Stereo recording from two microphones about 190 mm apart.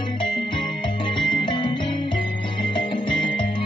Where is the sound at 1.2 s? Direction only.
25° left (ahead or behind).